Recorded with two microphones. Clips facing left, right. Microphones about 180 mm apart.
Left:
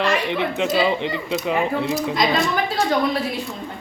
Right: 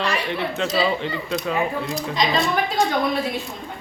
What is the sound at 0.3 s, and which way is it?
Speech, 15° left (ahead or behind).